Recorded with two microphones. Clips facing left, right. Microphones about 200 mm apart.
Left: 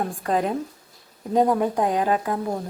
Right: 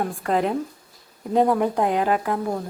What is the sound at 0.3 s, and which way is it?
A woman's voice, 20° left (ahead or behind).